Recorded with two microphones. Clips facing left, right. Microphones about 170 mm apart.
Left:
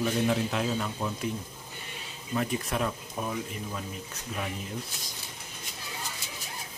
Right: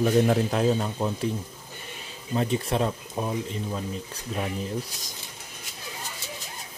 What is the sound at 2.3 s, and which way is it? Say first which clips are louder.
Speech: right 4 dB; 30° right (ahead or behind).